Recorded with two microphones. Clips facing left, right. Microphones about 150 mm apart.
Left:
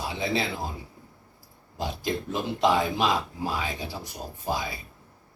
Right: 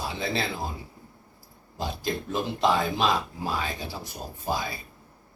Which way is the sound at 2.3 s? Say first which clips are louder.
Left 1 dB; 15° left (ahead or behind).